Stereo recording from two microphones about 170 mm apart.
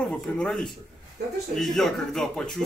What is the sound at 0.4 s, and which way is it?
Speech, 5° left (ahead or behind).